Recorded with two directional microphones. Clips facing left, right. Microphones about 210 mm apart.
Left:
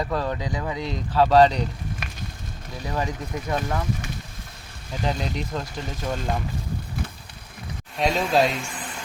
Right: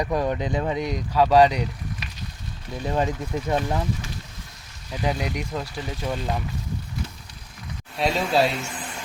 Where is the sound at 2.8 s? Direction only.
25° right (ahead or behind).